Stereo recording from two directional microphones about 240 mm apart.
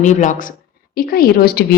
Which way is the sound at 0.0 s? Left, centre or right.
Left.